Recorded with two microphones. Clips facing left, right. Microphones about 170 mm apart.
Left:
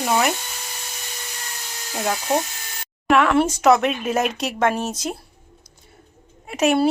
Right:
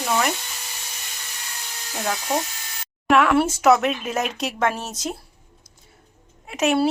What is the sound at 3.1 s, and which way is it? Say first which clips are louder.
A woman's voice: left 1 dB; 5° right (ahead or behind).